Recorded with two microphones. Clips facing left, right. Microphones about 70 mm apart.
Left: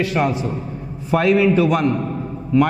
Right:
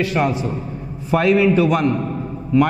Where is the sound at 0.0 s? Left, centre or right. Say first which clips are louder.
Even; centre.